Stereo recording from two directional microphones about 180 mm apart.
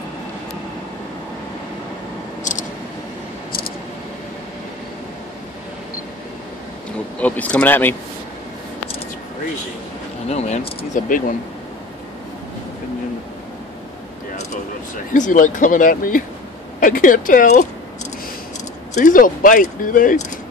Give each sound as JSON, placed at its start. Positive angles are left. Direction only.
{"t": 2.5, "sound": "a sound", "side_deg": 45}
{"t": 7.2, "sound": "speech", "side_deg": 10}
{"t": 10.2, "sound": "speech", "side_deg": 40}
{"t": 11.1, "sound": "speech", "side_deg": 50}
{"t": 15.1, "sound": "speech", "side_deg": 45}
{"t": 18.9, "sound": "speech", "side_deg": 50}